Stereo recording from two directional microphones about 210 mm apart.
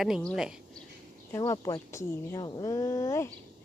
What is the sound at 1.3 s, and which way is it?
Speech, 15° left (ahead or behind).